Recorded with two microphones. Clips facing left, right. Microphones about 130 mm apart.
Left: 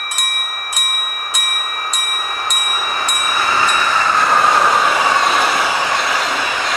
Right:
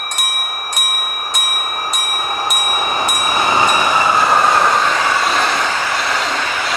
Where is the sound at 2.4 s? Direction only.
15° right (ahead or behind); by 6.6 s 10° left (ahead or behind).